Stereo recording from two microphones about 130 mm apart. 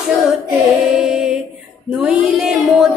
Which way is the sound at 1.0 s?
5° right (ahead or behind).